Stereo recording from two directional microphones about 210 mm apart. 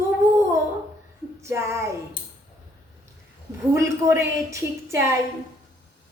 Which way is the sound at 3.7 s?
15° right (ahead or behind).